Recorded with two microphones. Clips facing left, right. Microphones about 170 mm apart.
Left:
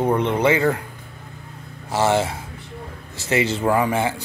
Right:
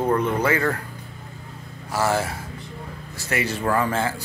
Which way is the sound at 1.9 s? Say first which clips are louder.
Left 4 dB; 25° left (ahead or behind).